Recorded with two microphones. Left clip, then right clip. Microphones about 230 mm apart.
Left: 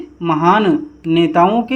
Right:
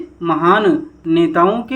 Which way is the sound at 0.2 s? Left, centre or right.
Left.